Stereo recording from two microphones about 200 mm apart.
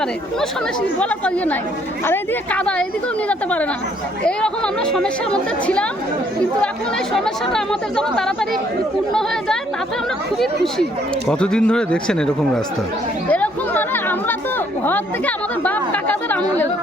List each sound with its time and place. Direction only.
0.8 s speech: 5° left (ahead or behind)
7.1 s speech: centre (ahead or behind)
11.3 s speech: 5° left (ahead or behind)
13.3 s chatter: 10° left (ahead or behind)